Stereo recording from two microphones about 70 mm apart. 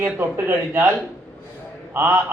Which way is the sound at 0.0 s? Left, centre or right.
Right.